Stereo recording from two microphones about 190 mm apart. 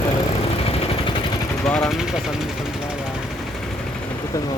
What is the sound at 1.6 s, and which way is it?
Speech, centre (ahead or behind).